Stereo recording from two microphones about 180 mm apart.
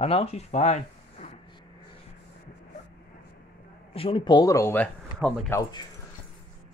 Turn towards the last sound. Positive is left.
turn(degrees=0)  # may be behind; listen again after turning